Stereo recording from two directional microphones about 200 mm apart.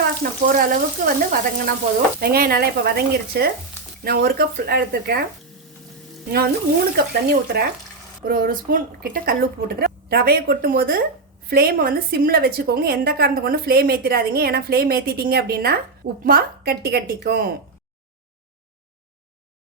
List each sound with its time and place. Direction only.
0.2 s a woman's voice: 45° right (ahead or behind)
6.9 s a woman's voice: 50° right (ahead or behind)